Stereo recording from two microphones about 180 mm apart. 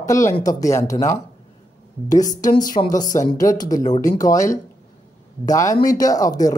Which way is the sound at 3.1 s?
20° left (ahead or behind).